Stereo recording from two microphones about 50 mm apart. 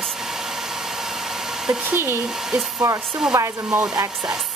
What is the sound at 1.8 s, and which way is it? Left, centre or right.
Speech, right.